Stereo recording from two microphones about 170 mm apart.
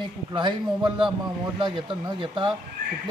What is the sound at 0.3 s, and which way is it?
A man's voice, 30° right (ahead or behind).